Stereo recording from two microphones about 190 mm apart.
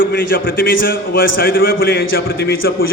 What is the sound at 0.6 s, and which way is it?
Speech, 75° left (ahead or behind).